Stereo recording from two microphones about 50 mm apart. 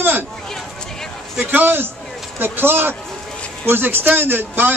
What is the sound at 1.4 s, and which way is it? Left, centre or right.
A man's voice, right.